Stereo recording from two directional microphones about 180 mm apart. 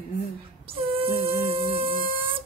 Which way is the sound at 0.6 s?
30° right (ahead or behind).